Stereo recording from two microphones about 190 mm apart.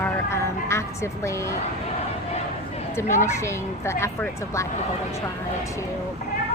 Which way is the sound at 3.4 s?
15° left (ahead or behind).